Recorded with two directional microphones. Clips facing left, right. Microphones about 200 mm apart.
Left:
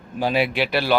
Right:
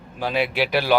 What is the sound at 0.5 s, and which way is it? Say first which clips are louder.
Speech: right 1 dB; 10° right (ahead or behind).